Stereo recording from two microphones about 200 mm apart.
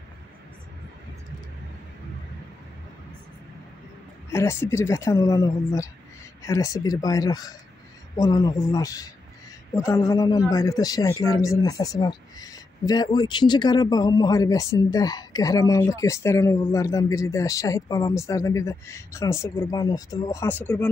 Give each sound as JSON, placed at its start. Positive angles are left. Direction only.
{"t": 4.3, "sound": "speech", "side_deg": 15}